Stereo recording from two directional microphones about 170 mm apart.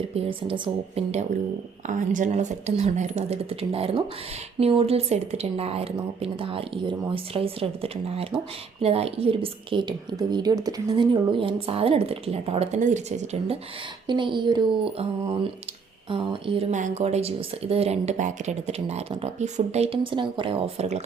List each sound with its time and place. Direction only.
0.1 s a woman's voice: 30° right (ahead or behind)
1.9 s a woman's voice: 50° right (ahead or behind)
14.1 s a woman's voice: 25° right (ahead or behind)
16.7 s a woman's voice: 45° right (ahead or behind)